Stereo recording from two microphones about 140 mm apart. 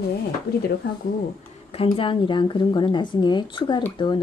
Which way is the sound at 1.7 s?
40° left (ahead or behind).